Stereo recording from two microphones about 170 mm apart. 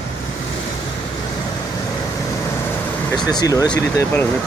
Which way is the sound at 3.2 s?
20° left (ahead or behind).